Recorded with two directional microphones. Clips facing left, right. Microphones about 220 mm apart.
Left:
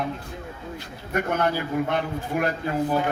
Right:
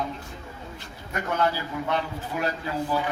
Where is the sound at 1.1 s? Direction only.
50° left (ahead or behind).